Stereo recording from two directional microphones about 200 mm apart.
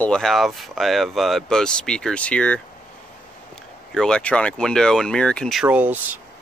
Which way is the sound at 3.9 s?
5° left (ahead or behind).